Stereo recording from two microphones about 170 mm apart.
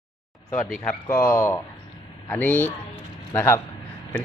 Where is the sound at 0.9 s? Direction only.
15° left (ahead or behind).